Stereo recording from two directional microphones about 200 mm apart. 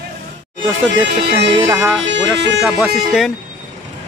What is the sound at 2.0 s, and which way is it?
Speech, 60° right (ahead or behind).